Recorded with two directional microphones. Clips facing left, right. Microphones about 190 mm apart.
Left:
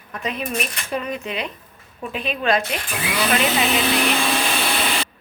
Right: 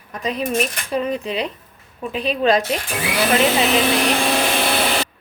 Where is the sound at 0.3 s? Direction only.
35° right (ahead or behind).